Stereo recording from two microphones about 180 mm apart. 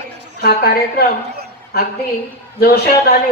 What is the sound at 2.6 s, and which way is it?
Speech, 60° left (ahead or behind).